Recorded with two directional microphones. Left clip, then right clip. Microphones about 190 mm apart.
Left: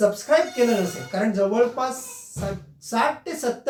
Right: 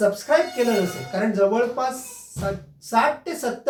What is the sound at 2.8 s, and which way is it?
Speech, 5° right (ahead or behind).